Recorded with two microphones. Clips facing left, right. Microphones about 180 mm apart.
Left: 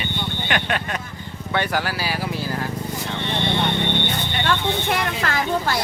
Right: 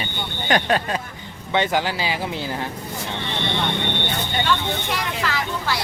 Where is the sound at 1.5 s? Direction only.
20° right (ahead or behind).